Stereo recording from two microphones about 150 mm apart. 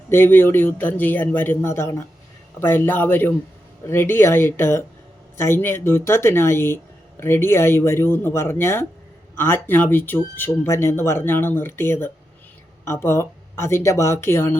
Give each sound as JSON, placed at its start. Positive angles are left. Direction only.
{"t": 0.1, "sound": "speech", "side_deg": 15}